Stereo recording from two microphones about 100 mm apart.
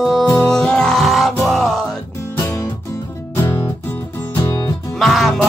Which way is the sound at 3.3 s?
30° left (ahead or behind).